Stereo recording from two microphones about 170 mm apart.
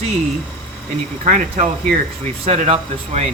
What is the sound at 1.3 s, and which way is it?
Speech, 45° right (ahead or behind).